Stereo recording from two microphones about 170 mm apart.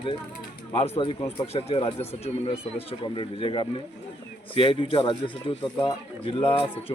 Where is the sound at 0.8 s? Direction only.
35° left (ahead or behind).